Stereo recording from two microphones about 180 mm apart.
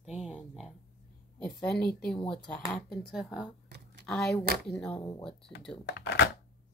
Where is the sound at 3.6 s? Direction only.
70° right (ahead or behind).